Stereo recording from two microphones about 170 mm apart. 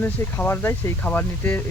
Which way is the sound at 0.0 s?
10° left (ahead or behind).